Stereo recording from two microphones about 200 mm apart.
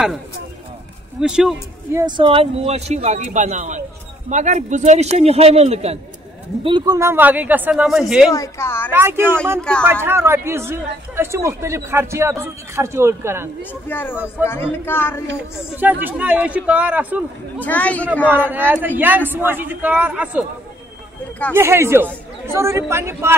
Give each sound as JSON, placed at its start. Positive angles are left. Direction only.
{"t": 1.2, "sound": "speech", "side_deg": -5}
{"t": 2.0, "sound": "speech", "side_deg": -20}
{"t": 6.6, "sound": "speech", "side_deg": -20}
{"t": 8.3, "sound": "a woman's voice", "side_deg": 15}
{"t": 8.9, "sound": "speech", "side_deg": -10}
{"t": 9.6, "sound": "speech", "side_deg": 5}
{"t": 10.0, "sound": "speech", "side_deg": -10}
{"t": 13.6, "sound": "a woman's voice", "side_deg": 10}
{"t": 15.8, "sound": "speech", "side_deg": -10}
{"t": 17.6, "sound": "a woman's voice", "side_deg": 10}
{"t": 18.3, "sound": "speech", "side_deg": -10}
{"t": 21.5, "sound": "speech", "side_deg": -15}